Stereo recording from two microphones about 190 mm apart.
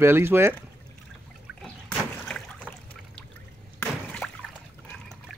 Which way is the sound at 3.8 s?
5° left (ahead or behind).